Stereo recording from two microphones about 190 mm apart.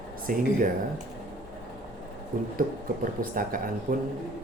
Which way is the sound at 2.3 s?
45° right (ahead or behind).